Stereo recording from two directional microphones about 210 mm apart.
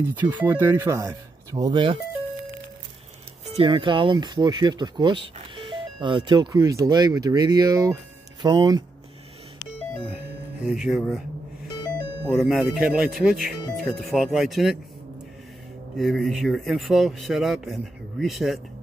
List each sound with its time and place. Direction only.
0.0 s speech: 10° right (ahead or behind)
3.4 s speech: 25° right (ahead or behind)
10.0 s speech: 5° right (ahead or behind)
12.3 s a man's voice: centre (ahead or behind)
16.0 s a man's voice: centre (ahead or behind)